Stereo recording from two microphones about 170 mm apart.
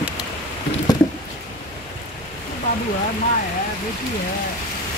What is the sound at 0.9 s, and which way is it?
Patter, 25° left (ahead or behind).